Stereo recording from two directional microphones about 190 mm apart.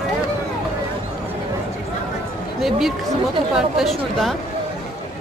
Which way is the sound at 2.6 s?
Centre (ahead or behind).